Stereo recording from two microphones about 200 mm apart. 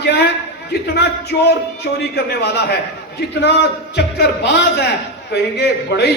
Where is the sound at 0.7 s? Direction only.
55° left (ahead or behind).